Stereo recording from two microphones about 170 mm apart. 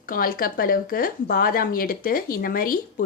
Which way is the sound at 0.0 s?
55° left (ahead or behind).